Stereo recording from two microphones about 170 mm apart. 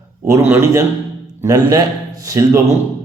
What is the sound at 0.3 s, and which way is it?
A man's voice, 15° right (ahead or behind).